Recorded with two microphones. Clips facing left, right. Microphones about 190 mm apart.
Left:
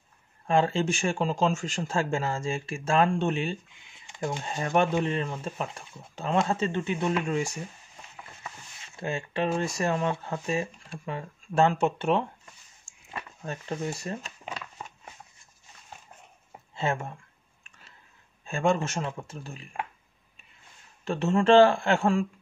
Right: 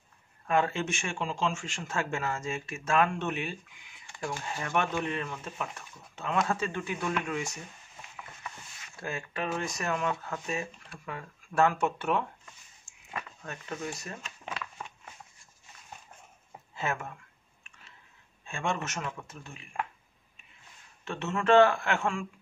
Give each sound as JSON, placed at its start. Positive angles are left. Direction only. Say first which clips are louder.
{"t": 0.5, "sound": "speech", "louder": "left 4 dB", "side_deg": 30}
{"t": 8.8, "sound": "speech", "louder": "left 5 dB", "side_deg": 25}
{"t": 16.7, "sound": "speech", "louder": "left 4 dB", "side_deg": 25}
{"t": 18.4, "sound": "speech", "louder": "left 7 dB", "side_deg": 35}
{"t": 21.0, "sound": "speech", "louder": "left 8 dB", "side_deg": 35}